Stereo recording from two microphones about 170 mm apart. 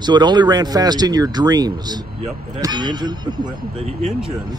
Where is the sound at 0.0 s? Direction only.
25° right (ahead or behind).